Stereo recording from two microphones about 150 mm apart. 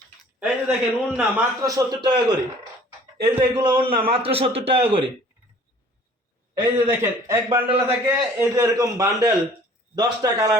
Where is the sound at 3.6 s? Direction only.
30° right (ahead or behind).